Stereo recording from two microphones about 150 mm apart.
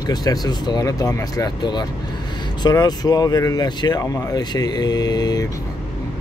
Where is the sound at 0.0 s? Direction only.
25° left (ahead or behind).